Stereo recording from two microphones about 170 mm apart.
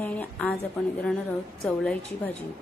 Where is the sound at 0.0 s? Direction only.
10° left (ahead or behind).